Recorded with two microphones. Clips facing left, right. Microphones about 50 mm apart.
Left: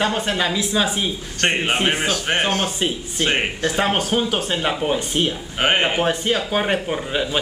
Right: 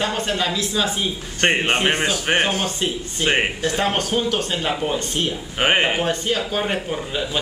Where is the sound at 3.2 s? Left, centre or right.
Centre.